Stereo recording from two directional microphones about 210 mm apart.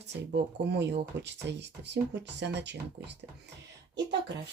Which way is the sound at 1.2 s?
55° right (ahead or behind).